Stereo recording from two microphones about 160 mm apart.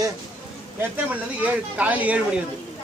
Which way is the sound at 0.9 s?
10° right (ahead or behind).